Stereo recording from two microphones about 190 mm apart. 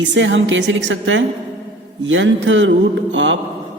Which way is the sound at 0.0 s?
75° right (ahead or behind).